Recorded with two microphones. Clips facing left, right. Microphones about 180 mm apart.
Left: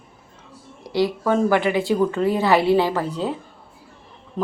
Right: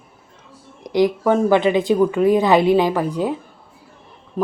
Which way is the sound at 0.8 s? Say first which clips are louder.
Right 4 dB; 15° right (ahead or behind).